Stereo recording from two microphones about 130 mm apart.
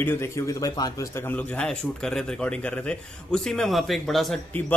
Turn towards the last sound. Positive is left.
turn(degrees=0)  # may be behind; listen again after turning